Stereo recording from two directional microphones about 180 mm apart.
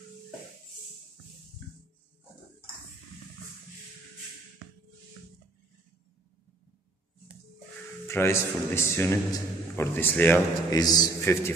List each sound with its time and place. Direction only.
8.1 s a man's voice: 15° left (ahead or behind)
10.7 s a man's voice: 20° left (ahead or behind)